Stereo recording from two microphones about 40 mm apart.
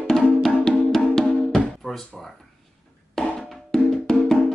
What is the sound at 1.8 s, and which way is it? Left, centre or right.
Drawer open or close, centre.